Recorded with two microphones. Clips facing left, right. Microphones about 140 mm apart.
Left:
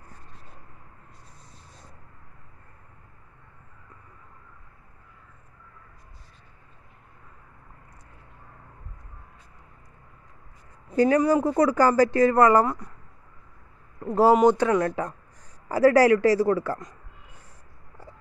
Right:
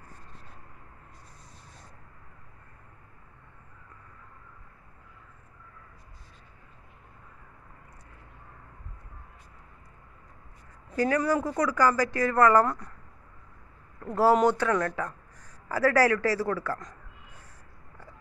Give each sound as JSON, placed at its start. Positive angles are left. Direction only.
{"t": 11.0, "sound": "speech", "side_deg": 25}
{"t": 14.0, "sound": "a man's voice", "side_deg": 15}